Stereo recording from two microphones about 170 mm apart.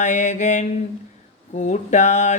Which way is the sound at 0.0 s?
45° left (ahead or behind).